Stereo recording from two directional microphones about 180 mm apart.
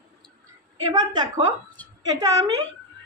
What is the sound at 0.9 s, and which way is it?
Speech, 20° right (ahead or behind).